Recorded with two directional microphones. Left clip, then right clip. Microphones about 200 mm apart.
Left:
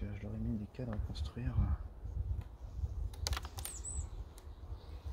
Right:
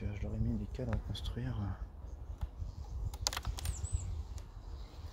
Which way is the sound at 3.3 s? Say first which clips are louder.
Right 4 dB; 20° right (ahead or behind).